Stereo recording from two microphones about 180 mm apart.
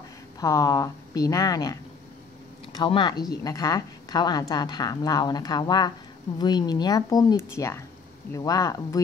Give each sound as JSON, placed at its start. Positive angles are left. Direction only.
{"t": 0.4, "sound": "a woman's voice", "side_deg": 20}